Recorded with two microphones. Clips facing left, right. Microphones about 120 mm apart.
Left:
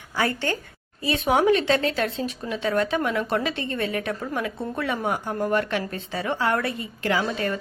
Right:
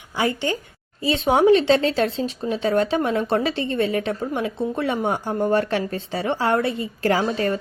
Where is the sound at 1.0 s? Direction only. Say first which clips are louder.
Right 4 dB; 25° right (ahead or behind).